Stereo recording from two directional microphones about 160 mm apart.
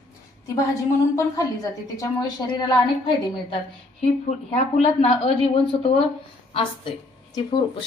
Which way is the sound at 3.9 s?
40° left (ahead or behind).